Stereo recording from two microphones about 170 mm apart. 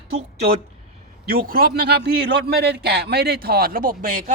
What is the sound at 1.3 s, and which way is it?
A man's voice, 55° right (ahead or behind).